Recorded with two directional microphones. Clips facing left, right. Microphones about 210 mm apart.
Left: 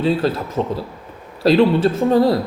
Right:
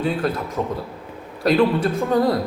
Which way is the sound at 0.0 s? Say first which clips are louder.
Left 4 dB; 30° left (ahead or behind).